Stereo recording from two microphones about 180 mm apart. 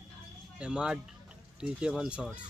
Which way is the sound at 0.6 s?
5° right (ahead or behind).